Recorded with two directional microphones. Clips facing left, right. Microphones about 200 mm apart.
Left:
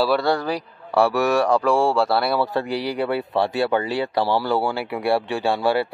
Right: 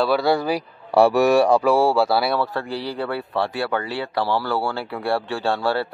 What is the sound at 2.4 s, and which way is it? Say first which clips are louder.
Speech: left 3 dB; 15° left (ahead or behind).